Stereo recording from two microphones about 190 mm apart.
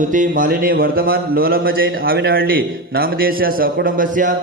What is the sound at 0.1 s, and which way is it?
A man's voice, 45° right (ahead or behind).